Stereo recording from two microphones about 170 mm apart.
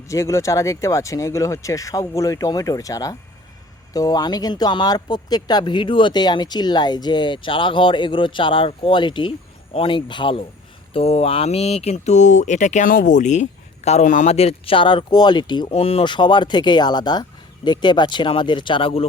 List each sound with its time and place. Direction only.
0.1 s speech: 15° left (ahead or behind); by 19.0 s 30° left (ahead or behind)